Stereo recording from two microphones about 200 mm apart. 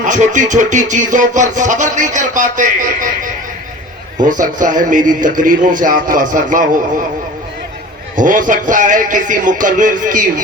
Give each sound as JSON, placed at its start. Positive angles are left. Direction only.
{"t": 0.0, "sound": "speech", "side_deg": -40}
{"t": 8.2, "sound": "speech", "side_deg": -40}